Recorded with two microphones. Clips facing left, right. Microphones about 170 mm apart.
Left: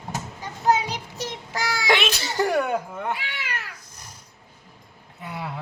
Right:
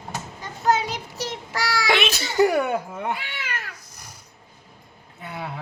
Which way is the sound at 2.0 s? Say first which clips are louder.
Right 4 dB; 10° right (ahead or behind).